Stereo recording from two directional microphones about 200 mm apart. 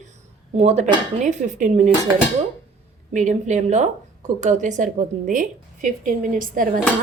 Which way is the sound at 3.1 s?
40° right (ahead or behind).